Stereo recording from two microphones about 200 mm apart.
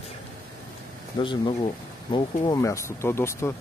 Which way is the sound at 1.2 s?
25° left (ahead or behind).